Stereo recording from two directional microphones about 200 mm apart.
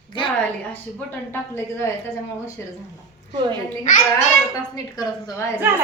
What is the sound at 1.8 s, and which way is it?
Speech, 15° left (ahead or behind).